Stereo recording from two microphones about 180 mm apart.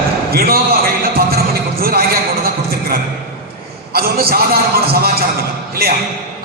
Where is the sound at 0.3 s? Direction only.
55° right (ahead or behind).